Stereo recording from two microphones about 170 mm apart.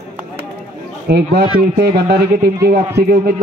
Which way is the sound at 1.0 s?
70° right (ahead or behind).